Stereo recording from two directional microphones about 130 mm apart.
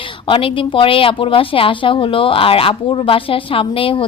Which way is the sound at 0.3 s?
40° left (ahead or behind).